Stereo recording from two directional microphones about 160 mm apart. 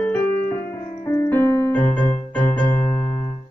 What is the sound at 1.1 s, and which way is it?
Keyboard, 15° left (ahead or behind).